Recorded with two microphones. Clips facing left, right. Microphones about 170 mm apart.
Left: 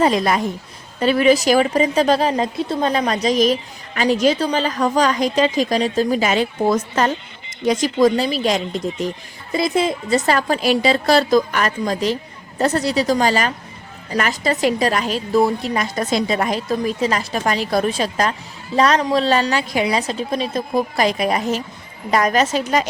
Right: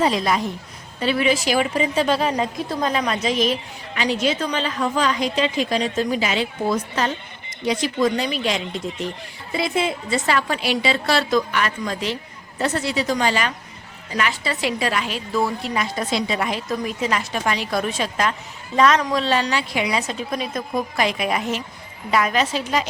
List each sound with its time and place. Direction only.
0.0 s a woman's voice: 50° left (ahead or behind)